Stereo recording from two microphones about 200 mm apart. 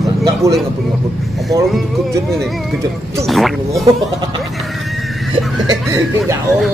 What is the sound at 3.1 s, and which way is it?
Speech, centre (ahead or behind).